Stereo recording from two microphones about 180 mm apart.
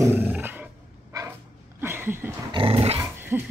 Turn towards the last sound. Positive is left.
turn(degrees=-10)  # may be behind; listen again after turning